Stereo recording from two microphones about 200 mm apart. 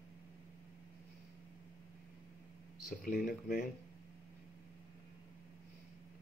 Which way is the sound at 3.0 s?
45° left (ahead or behind).